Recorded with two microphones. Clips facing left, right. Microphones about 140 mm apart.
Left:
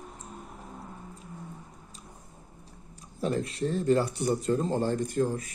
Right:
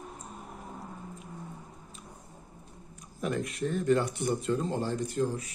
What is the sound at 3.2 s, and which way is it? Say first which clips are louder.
Speech: left 2 dB; 30° left (ahead or behind).